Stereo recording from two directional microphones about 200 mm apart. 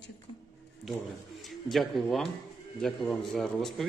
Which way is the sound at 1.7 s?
Centre (ahead or behind).